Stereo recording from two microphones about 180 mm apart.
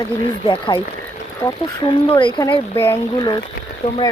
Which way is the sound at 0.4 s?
25° left (ahead or behind).